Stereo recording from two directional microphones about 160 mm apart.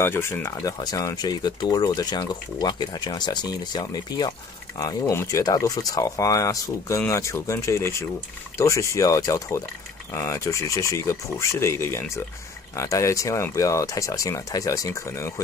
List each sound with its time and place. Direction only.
0.0 s speech: 15° left (ahead or behind)